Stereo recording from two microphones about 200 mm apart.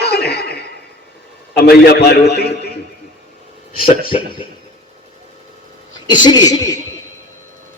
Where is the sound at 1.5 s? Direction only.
50° left (ahead or behind).